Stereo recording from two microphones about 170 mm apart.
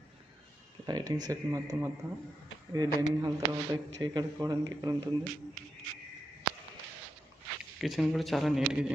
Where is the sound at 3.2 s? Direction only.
20° right (ahead or behind).